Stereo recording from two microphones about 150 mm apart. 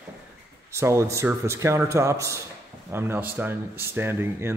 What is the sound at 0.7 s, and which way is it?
Speech, 20° right (ahead or behind).